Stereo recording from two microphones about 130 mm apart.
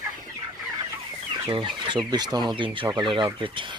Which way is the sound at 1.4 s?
40° right (ahead or behind).